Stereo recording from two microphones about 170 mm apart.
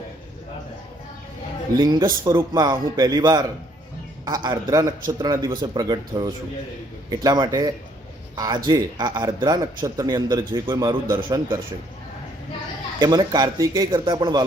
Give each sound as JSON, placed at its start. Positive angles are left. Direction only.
{"t": 1.8, "sound": "a man's voice", "side_deg": -25}
{"t": 13.0, "sound": "a man's voice", "side_deg": -25}